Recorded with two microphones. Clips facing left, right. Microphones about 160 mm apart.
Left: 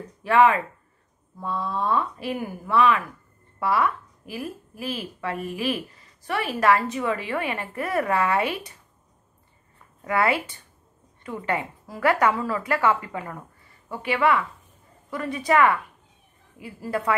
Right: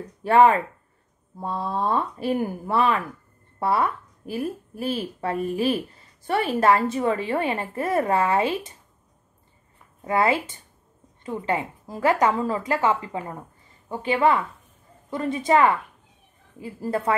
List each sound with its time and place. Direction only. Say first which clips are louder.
0.2 s a woman's voice: right 2 dB; 30° right (ahead or behind)
10.0 s a woman's voice: right 1 dB; 25° right (ahead or behind)